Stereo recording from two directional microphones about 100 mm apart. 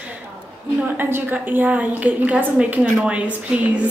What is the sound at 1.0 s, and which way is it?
A woman's voice, 20° right (ahead or behind).